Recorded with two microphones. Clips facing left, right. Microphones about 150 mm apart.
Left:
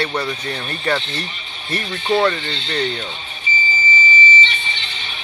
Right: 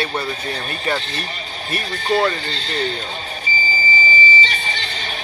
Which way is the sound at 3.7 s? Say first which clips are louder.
Even; 40° right (ahead or behind).